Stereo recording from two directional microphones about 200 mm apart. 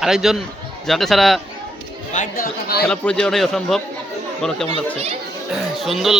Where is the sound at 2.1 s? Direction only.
45° left (ahead or behind).